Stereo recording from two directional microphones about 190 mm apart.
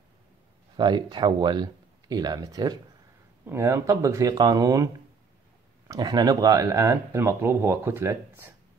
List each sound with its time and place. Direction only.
0.7 s speech: 25° right (ahead or behind)
5.9 s speech: 20° right (ahead or behind)